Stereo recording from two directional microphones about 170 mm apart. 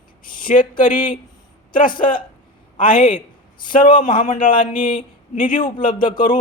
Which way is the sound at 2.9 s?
55° left (ahead or behind).